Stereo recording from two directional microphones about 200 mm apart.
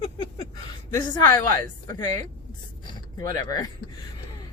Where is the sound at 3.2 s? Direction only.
20° left (ahead or behind).